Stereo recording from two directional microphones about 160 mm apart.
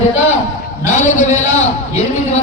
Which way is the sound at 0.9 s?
45° left (ahead or behind).